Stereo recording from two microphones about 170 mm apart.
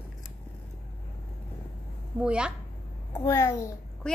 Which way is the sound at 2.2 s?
5° right (ahead or behind).